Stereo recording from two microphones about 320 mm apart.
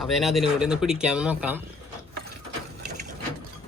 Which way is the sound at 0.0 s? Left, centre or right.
Centre.